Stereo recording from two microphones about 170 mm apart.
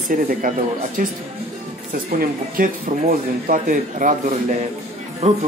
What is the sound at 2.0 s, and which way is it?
A man's voice, 60° right (ahead or behind).